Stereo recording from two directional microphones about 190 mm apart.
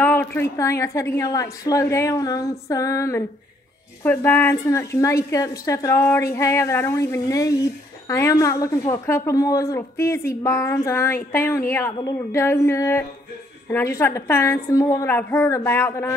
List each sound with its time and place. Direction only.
0.0 s speech: 10° left (ahead or behind)